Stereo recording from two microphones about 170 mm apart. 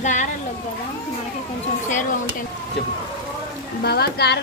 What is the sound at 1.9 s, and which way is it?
Speech, 50° left (ahead or behind).